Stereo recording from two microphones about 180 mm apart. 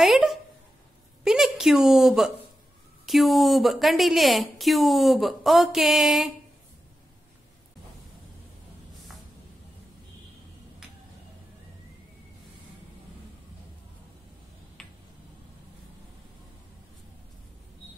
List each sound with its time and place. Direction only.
0.0 s a sound: centre (ahead or behind)
3.1 s a woman's voice: centre (ahead or behind)
14.8 s tick-tock: 5° left (ahead or behind)